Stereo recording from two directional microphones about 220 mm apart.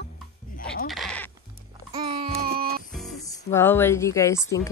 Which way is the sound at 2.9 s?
Centre (ahead or behind).